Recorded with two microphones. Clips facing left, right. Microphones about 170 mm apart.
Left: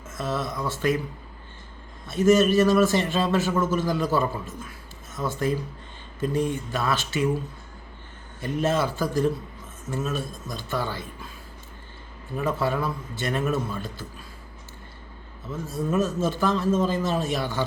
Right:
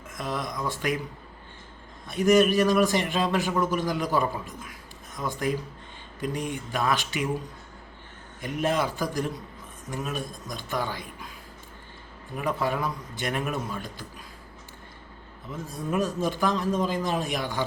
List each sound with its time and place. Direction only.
0.1 s a man's voice: 15° right (ahead or behind)
2.0 s a man's voice: 15° right (ahead or behind)
8.4 s a man's voice: 15° right (ahead or behind)
12.4 s a man's voice: 15° right (ahead or behind)
15.4 s a man's voice: 15° right (ahead or behind)